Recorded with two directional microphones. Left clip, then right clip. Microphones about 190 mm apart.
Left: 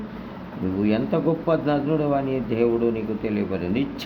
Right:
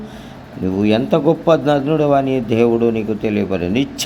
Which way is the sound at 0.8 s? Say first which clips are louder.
Right 8 dB; 25° right (ahead or behind).